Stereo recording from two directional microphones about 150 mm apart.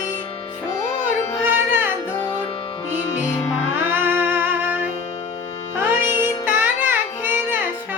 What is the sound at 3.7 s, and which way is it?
Music, 15° right (ahead or behind).